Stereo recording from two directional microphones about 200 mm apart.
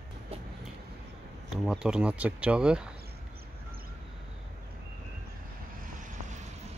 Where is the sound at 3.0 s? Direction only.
50° right (ahead or behind).